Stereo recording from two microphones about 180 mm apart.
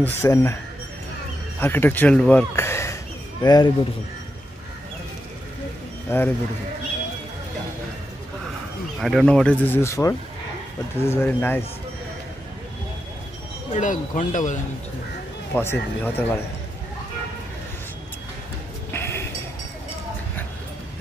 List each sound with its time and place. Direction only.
0.0 s speech: 15° left (ahead or behind)
1.6 s a man's voice: 10° left (ahead or behind)
6.0 s speech: 10° left (ahead or behind)
9.0 s speech: centre (ahead or behind)
13.7 s speech: 45° left (ahead or behind)
15.5 s speech: 10° left (ahead or behind)
18.9 s a sound: 15° left (ahead or behind)